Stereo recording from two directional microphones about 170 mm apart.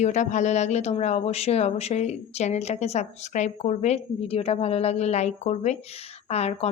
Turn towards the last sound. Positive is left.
turn(degrees=40)  # may be behind; listen again after turning